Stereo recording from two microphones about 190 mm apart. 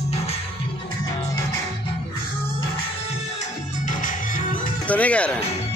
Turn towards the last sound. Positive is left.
turn(degrees=5)  # may be behind; listen again after turning